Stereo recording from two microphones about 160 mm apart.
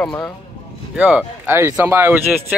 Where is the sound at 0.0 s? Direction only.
10° left (ahead or behind).